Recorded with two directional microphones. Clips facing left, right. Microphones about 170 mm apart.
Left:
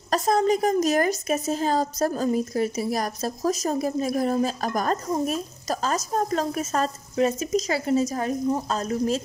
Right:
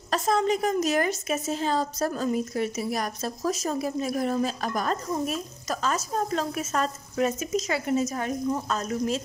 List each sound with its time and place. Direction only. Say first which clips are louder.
0.1 s a woman's voice: left 3 dB; 40° left (ahead or behind)